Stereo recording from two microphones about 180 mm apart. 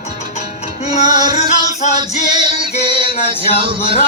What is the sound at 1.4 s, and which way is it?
Male singing, 40° left (ahead or behind).